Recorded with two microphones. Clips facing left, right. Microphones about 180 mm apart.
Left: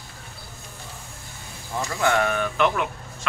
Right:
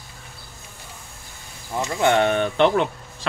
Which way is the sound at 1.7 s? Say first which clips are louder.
Right 4 dB; 20° right (ahead or behind).